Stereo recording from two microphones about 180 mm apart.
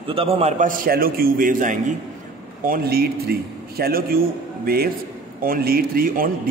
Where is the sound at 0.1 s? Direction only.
30° right (ahead or behind).